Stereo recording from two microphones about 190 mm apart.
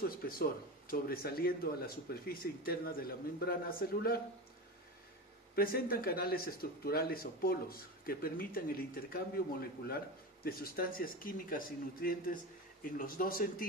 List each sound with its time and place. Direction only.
0.3 s speech: 50° left (ahead or behind)
5.6 s speech: 50° left (ahead or behind)